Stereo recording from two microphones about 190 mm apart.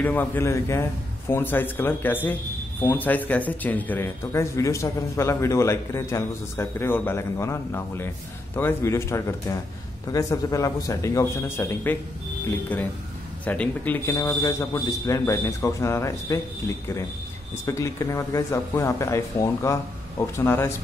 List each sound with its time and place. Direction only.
0.0 s speech: 10° left (ahead or behind)